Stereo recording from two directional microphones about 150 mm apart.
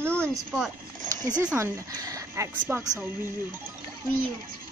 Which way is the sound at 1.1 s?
25° right (ahead or behind).